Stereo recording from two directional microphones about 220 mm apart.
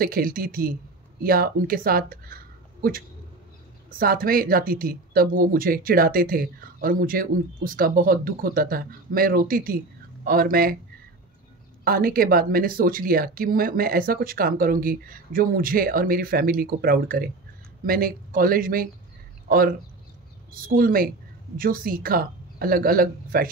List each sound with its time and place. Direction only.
0.0 s speech: 40° right (ahead or behind)
4.0 s speech: 40° right (ahead or behind)
11.8 s speech: 40° right (ahead or behind)
20.6 s speech: 40° right (ahead or behind)